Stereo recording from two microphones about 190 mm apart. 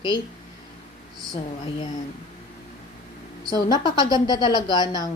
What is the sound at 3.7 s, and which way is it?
A woman's voice, 20° left (ahead or behind).